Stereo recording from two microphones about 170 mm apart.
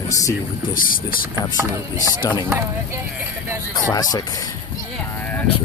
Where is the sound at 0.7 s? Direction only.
55° left (ahead or behind).